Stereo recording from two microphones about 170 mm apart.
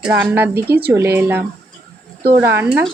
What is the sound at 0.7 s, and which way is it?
Speech, 65° right (ahead or behind).